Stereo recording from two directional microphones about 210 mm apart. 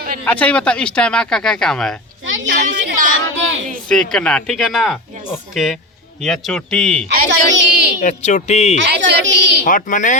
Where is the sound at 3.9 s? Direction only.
5° left (ahead or behind).